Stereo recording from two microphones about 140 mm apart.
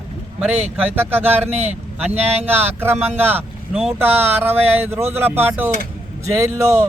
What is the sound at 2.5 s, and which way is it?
Speech, 15° right (ahead or behind).